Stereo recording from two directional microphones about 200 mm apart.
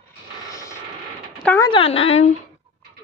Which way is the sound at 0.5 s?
15° left (ahead or behind).